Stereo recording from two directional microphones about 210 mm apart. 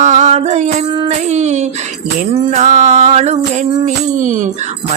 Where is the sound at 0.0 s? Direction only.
35° right (ahead or behind).